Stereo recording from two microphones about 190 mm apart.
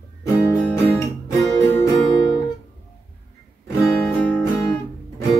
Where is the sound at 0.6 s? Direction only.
10° left (ahead or behind).